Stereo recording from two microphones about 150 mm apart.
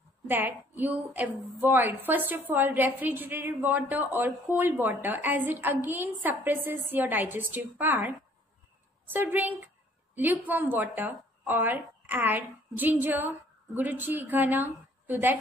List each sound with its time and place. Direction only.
0.3 s a woman's voice: 15° right (ahead or behind)